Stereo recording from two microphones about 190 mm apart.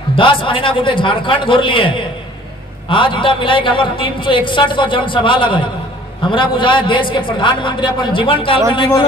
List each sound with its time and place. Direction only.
0.1 s a woman's voice: 25° left (ahead or behind)